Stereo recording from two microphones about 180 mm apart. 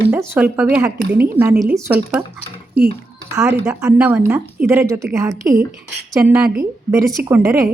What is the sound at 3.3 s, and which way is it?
A woman's voice, 15° right (ahead or behind).